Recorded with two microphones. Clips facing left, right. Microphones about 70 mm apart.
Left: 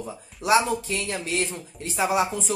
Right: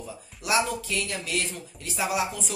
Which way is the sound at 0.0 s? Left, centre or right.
Left.